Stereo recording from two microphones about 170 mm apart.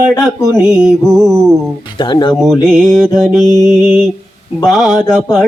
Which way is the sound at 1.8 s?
25° left (ahead or behind).